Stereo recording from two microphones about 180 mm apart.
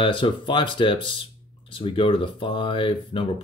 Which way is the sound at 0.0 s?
30° left (ahead or behind).